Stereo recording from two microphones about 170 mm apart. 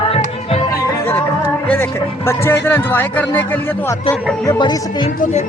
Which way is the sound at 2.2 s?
15° left (ahead or behind).